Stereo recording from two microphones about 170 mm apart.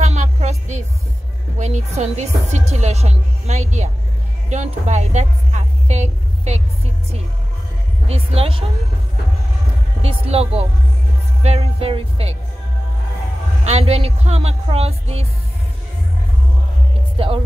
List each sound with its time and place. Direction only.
0.0 s a sound: 40° right (ahead or behind)
1.6 s a woman's voice: 40° right (ahead or behind)
8.1 s speech: 35° right (ahead or behind)
10.0 s speech: 35° right (ahead or behind)
13.7 s speech: 40° right (ahead or behind)
17.2 s speech: 30° right (ahead or behind)